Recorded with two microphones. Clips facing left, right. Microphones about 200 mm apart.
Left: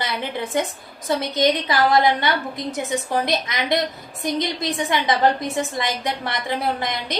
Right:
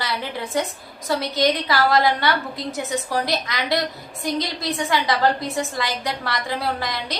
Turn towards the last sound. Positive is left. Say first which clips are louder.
# left 2 dB
turn(degrees=20)  # may be behind; listen again after turning